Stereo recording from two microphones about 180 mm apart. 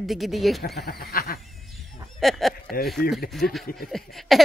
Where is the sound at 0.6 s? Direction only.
60° left (ahead or behind).